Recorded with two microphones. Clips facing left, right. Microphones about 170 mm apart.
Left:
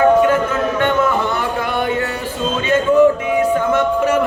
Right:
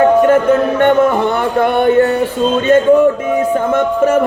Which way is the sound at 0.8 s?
55° right (ahead or behind).